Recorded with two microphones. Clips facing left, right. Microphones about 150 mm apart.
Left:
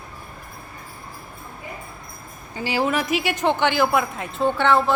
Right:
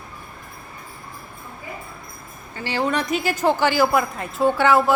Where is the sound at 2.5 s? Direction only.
10° left (ahead or behind).